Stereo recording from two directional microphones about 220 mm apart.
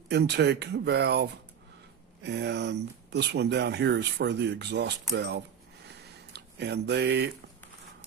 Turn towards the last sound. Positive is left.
turn(degrees=-50)  # may be behind; listen again after turning